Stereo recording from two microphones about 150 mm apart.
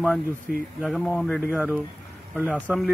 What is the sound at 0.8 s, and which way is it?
Speech, 5° left (ahead or behind).